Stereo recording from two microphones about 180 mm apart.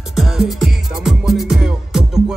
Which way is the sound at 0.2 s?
Centre (ahead or behind).